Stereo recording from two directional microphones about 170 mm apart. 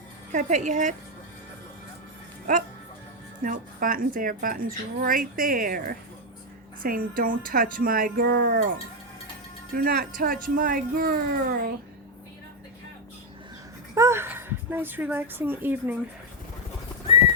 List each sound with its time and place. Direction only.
0.3 s speech: 45° right (ahead or behind)
3.4 s a woman's voice: 55° right (ahead or behind)
9.7 s a woman's voice: 60° right (ahead or behind)
13.9 s speech: 15° right (ahead or behind)